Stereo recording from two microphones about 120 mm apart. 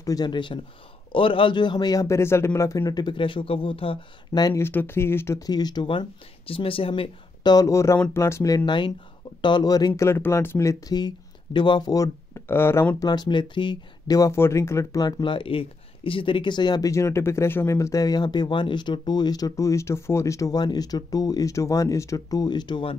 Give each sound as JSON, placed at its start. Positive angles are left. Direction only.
{"t": 0.0, "sound": "speech", "side_deg": 35}
{"t": 4.3, "sound": "speech", "side_deg": 35}
{"t": 4.6, "sound": "speech", "side_deg": 20}
{"t": 5.5, "sound": "speech", "side_deg": 35}
{"t": 5.9, "sound": "speech", "side_deg": 50}
{"t": 13.0, "sound": "speech", "side_deg": 35}
{"t": 16.9, "sound": "speech", "side_deg": 20}